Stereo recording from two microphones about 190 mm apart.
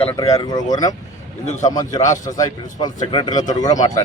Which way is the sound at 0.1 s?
15° left (ahead or behind).